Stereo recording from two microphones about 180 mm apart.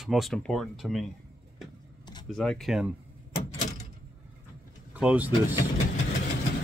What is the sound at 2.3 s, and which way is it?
Speech, centre (ahead or behind).